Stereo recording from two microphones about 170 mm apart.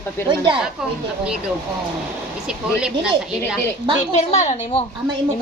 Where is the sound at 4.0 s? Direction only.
40° left (ahead or behind).